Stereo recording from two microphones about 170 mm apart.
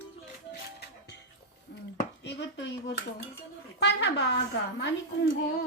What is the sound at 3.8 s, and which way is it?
A woman's voice, 90° left.